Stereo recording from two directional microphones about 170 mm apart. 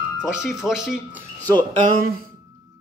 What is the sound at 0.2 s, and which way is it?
Speech, 5° right (ahead or behind).